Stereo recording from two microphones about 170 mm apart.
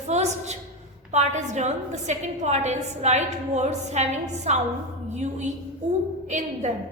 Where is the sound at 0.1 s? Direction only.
40° right (ahead or behind).